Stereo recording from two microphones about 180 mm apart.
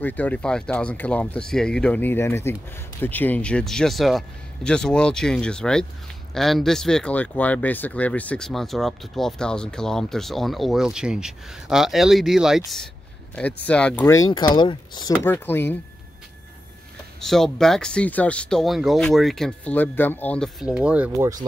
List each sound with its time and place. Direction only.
0.0 s speech: 10° left (ahead or behind)
15.2 s speech: 10° left (ahead or behind)
17.2 s speech: centre (ahead or behind)